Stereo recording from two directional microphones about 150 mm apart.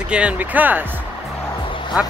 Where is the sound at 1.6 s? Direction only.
35° left (ahead or behind).